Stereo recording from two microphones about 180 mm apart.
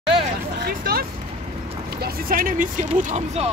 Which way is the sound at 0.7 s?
60° right (ahead or behind).